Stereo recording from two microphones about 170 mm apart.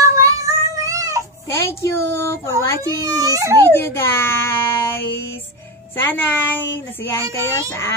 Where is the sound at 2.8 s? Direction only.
20° right (ahead or behind).